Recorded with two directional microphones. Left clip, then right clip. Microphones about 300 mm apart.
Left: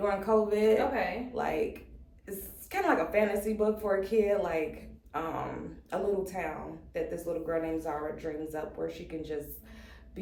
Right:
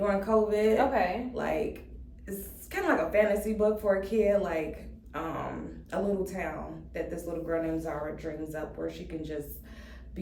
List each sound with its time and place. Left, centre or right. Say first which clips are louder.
0.0 s a woman's voice: right 1 dB; centre